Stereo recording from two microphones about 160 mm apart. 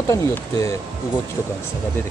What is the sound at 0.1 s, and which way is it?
Speech, 20° left (ahead or behind).